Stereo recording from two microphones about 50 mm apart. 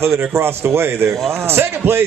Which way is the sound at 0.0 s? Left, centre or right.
Right.